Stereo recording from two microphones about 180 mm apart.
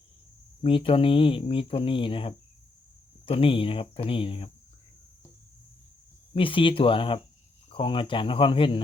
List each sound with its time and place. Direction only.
0.6 s speech: 30° left (ahead or behind)
6.3 s speech: 30° left (ahead or behind)